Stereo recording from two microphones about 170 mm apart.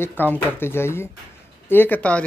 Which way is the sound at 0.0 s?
10° left (ahead or behind).